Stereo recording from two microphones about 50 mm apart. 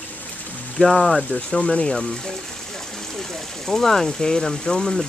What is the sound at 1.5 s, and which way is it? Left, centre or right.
Speech, centre.